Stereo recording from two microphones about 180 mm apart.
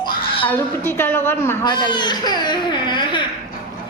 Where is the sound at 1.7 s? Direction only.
25° left (ahead or behind).